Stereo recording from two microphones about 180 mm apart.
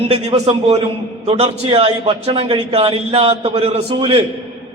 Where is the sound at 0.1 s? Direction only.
35° right (ahead or behind).